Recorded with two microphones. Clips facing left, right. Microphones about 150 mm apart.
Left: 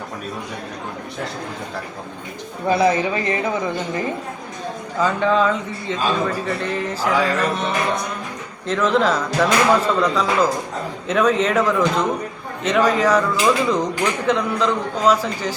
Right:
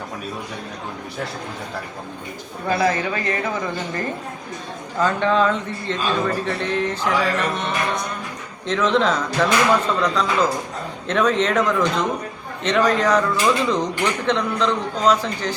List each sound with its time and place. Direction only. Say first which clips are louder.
2.6 s a man's voice: left 3 dB; 20° left (ahead or behind)
8.6 s a man's voice: left 1 dB; 5° left (ahead or behind)